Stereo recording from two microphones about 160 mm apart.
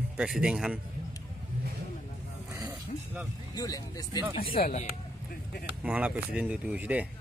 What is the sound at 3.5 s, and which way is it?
Speech, 20° left (ahead or behind).